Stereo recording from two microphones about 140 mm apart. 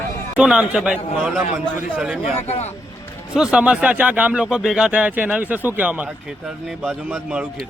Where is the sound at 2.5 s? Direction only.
50° left (ahead or behind).